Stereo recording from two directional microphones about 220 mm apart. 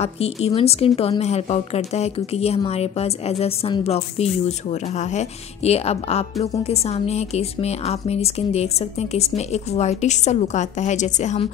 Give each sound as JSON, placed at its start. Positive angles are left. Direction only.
{"t": 0.0, "sound": "a woman's voice", "side_deg": 30}